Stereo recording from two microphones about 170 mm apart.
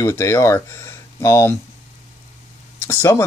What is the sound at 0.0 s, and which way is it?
Speech, 15° left (ahead or behind).